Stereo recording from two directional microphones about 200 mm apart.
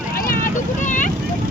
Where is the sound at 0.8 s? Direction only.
40° left (ahead or behind).